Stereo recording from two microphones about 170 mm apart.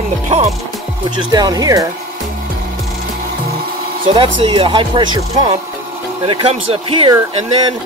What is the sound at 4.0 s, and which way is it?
Speech, 30° right (ahead or behind).